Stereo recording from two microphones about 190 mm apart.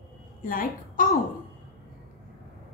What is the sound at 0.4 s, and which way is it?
Speech, 45° left (ahead or behind).